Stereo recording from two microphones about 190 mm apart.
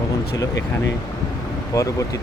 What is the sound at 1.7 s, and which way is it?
Speech, 15° left (ahead or behind).